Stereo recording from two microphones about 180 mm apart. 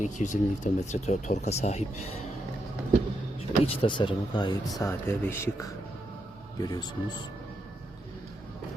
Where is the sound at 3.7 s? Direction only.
30° left (ahead or behind).